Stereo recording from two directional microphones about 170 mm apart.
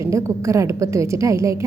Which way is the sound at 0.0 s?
15° right (ahead or behind).